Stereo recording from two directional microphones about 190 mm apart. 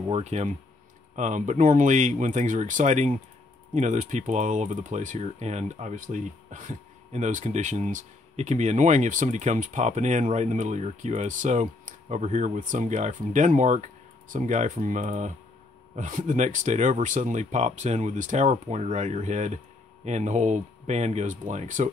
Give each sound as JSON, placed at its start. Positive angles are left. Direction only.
{"t": 0.1, "sound": "speech", "side_deg": -35}